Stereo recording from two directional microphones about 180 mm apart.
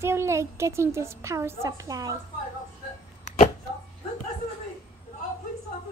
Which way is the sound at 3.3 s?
40° left (ahead or behind).